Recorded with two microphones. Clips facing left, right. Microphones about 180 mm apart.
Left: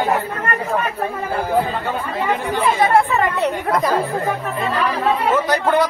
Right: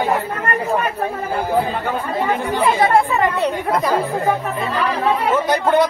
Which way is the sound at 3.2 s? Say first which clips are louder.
Right 1 dB; 15° right (ahead or behind).